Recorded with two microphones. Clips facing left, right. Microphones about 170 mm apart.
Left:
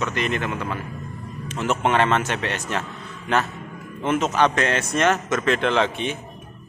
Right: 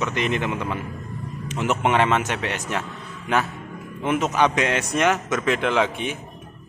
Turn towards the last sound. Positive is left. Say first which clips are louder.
# even
turn(degrees=-10)  # may be behind; listen again after turning